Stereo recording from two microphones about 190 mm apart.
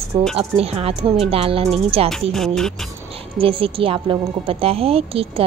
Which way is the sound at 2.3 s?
Centre (ahead or behind).